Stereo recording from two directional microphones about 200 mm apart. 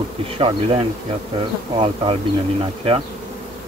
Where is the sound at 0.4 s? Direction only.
25° right (ahead or behind).